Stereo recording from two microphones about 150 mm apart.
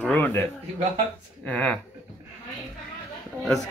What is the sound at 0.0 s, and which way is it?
Speech, 10° left (ahead or behind).